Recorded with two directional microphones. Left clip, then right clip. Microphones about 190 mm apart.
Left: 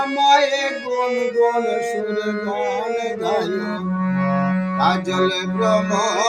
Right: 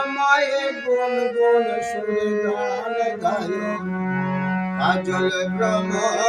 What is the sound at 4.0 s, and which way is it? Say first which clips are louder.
Music: left 8 dB; 35° left (ahead or behind).